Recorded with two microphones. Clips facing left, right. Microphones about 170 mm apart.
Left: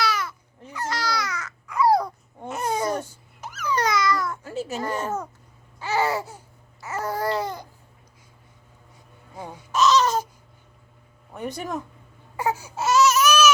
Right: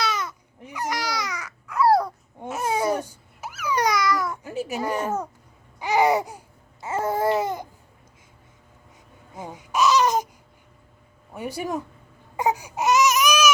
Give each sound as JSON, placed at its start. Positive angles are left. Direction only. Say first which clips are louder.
{"t": 0.0, "sound": "babbling", "louder": "left 1 dB", "side_deg": -20}
{"t": 9.3, "sound": "baby cry", "louder": "right 1 dB", "side_deg": -20}
{"t": 11.3, "sound": "a sound", "louder": "right 1 dB", "side_deg": -10}
{"t": 12.4, "sound": "baby cry", "louder": "right 2 dB", "side_deg": -15}